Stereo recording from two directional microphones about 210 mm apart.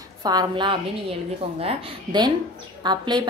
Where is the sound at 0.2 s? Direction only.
20° right (ahead or behind).